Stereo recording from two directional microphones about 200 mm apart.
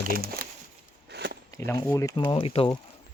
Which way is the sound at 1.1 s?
55° right (ahead or behind).